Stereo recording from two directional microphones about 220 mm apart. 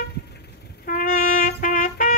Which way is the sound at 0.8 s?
40° left (ahead or behind).